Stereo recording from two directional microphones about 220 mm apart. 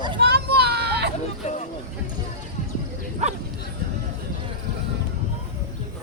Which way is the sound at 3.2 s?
30° right (ahead or behind).